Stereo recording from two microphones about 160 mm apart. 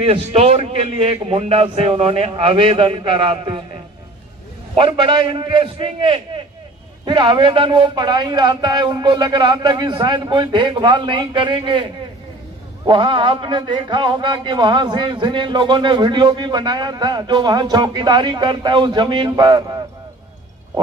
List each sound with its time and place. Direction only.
0.0 s a man's voice: 35° right (ahead or behind)
4.7 s a man's voice: 30° right (ahead or behind)